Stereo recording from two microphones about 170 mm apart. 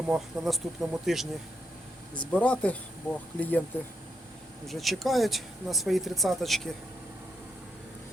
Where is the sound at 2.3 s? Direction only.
10° left (ahead or behind).